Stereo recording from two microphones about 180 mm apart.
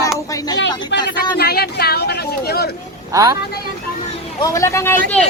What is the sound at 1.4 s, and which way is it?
Speech, 60° left (ahead or behind).